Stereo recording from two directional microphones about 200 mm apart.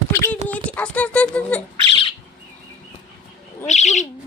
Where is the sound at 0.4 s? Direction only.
5° left (ahead or behind).